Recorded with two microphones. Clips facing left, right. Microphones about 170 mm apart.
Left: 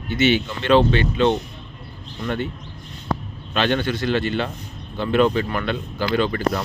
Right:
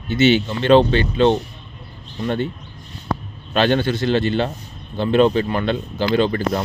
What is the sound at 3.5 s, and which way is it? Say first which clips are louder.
Speech: right 4 dB; 35° right (ahead or behind).